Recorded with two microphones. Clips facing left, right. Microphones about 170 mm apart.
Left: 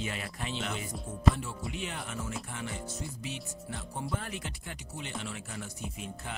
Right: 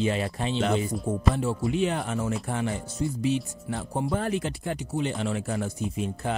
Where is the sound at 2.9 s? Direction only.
30° right (ahead or behind).